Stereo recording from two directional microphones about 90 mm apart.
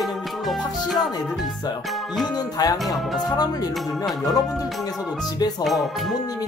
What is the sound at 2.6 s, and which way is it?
Speech, 50° left (ahead or behind).